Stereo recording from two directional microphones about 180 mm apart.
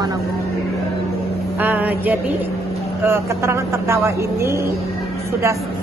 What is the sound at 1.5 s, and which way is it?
A man's voice, 10° right (ahead or behind).